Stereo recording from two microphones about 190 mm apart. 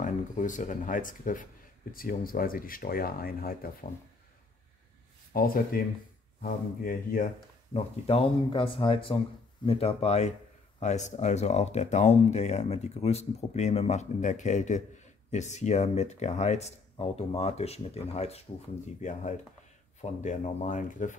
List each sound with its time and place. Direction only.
0.0 s speech: 40° left (ahead or behind)
5.3 s speech: 50° left (ahead or behind)
7.7 s speech: 30° left (ahead or behind)